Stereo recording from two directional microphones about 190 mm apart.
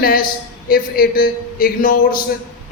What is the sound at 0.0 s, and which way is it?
A man's voice, 50° left (ahead or behind).